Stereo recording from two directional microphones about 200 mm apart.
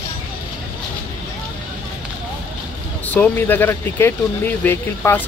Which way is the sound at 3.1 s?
10° left (ahead or behind).